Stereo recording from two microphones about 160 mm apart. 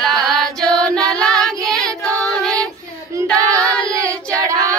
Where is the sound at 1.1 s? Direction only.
Centre (ahead or behind).